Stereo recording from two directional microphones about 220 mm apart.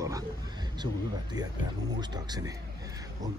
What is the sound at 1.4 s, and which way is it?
Speech, 15° right (ahead or behind).